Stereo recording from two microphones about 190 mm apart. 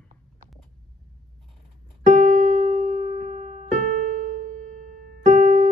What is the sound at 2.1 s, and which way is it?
Piano, 40° right (ahead or behind).